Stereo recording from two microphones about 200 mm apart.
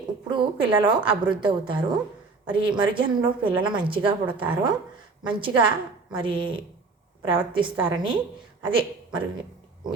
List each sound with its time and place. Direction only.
0.3 s a woman's voice: 25° right (ahead or behind)